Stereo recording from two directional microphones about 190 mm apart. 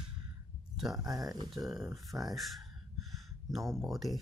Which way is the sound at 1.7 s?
Centre (ahead or behind).